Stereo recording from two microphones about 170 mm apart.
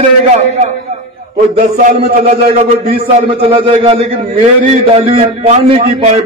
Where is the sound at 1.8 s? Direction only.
60° right (ahead or behind).